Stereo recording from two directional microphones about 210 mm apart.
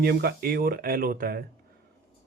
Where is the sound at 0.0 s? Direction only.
50° right (ahead or behind).